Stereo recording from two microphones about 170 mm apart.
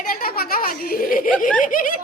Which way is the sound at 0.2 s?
60° left (ahead or behind).